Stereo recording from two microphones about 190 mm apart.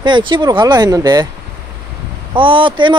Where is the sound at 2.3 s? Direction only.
25° right (ahead or behind).